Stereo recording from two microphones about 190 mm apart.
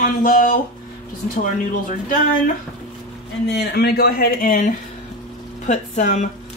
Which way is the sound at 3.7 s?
55° left (ahead or behind).